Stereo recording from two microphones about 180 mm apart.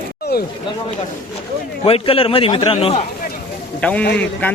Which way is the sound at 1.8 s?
30° left (ahead or behind).